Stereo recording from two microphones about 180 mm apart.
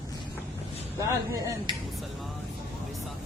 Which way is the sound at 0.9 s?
15° right (ahead or behind).